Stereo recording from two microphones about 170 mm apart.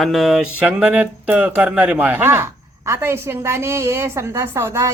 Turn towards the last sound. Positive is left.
turn(degrees=-15)  # may be behind; listen again after turning